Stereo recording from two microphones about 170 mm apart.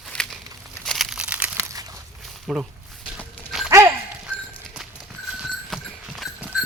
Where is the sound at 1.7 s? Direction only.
20° right (ahead or behind).